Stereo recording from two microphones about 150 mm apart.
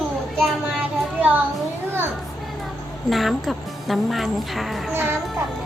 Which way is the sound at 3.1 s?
Centre (ahead or behind).